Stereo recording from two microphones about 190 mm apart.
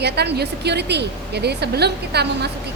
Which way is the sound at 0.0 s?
60° right (ahead or behind).